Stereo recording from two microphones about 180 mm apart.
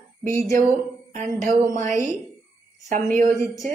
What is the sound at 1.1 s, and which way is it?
Speech, 45° right (ahead or behind).